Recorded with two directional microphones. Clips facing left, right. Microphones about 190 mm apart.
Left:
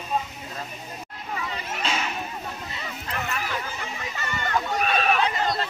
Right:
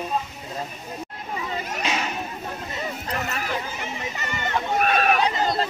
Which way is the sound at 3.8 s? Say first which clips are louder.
Right 2 dB; 20° right (ahead or behind).